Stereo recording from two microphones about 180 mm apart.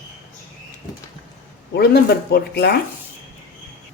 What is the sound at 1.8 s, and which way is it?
Speech, 60° left (ahead or behind).